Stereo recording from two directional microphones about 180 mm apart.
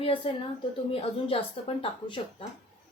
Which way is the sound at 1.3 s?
30° left (ahead or behind).